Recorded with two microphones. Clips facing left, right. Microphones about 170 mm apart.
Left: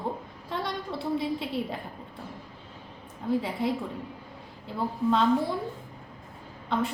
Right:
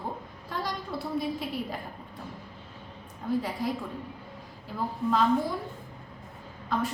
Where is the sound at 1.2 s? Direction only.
25° left (ahead or behind).